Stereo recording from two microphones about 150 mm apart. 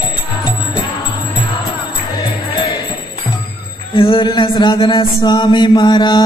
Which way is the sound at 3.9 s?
35° left (ahead or behind).